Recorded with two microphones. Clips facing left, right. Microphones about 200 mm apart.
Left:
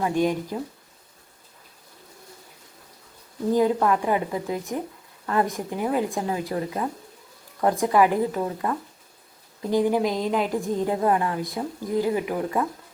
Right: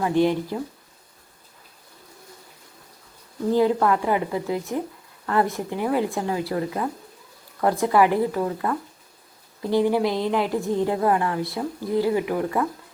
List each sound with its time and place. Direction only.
0.0 s a woman's voice: 15° left (ahead or behind)
3.5 s a woman's voice: 15° left (ahead or behind)
4.4 s speech: 20° right (ahead or behind)
5.2 s a woman's voice: 15° left (ahead or behind)